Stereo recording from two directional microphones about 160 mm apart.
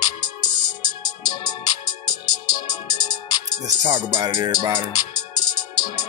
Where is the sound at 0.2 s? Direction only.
25° left (ahead or behind).